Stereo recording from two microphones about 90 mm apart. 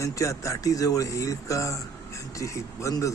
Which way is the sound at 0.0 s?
35° left (ahead or behind).